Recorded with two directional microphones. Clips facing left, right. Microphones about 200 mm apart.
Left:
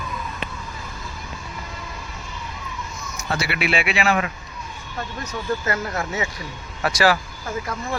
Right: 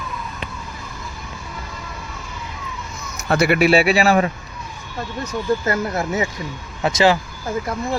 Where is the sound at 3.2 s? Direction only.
60° right (ahead or behind); by 4.3 s 40° right (ahead or behind).